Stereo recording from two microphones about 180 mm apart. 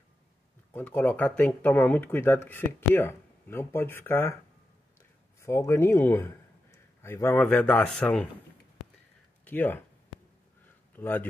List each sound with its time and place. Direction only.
0.7 s speech: 10° left (ahead or behind)
5.4 s speech: 15° left (ahead or behind)
9.4 s speech: 10° left (ahead or behind)
11.0 s speech: 10° left (ahead or behind)